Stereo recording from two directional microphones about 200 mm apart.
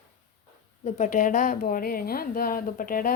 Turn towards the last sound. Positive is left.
turn(degrees=45)  # may be behind; listen again after turning